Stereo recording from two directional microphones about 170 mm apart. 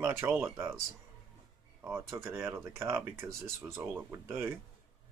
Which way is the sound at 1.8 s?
15° right (ahead or behind).